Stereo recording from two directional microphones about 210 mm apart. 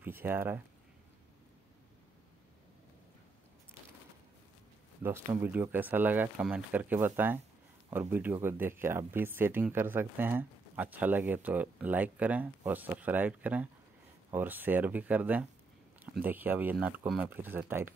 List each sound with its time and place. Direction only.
0.0 s speech: 10° right (ahead or behind)
5.0 s speech: 10° right (ahead or behind)